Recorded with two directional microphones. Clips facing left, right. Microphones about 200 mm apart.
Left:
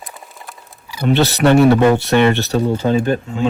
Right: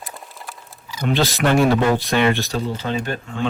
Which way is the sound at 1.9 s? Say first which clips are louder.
Left 5 dB; 65° left (ahead or behind).